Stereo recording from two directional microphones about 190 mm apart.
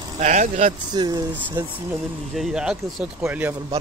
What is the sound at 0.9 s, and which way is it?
Speech, 20° right (ahead or behind).